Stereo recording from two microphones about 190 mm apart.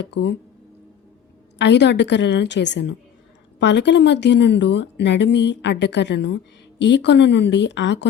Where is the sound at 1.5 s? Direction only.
65° left (ahead or behind).